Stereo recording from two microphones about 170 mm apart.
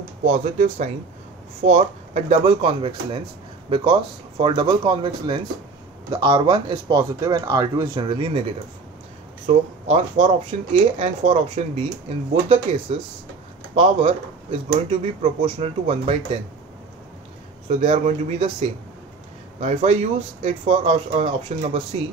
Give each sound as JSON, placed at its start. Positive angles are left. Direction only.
{"t": 0.2, "sound": "speech", "side_deg": -45}
{"t": 9.5, "sound": "speech", "side_deg": -40}
{"t": 13.7, "sound": "speech", "side_deg": -35}
{"t": 17.6, "sound": "speech", "side_deg": -40}
{"t": 19.6, "sound": "speech", "side_deg": -40}